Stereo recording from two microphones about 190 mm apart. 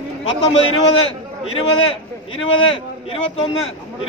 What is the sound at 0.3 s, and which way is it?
A man's voice, 30° left (ahead or behind).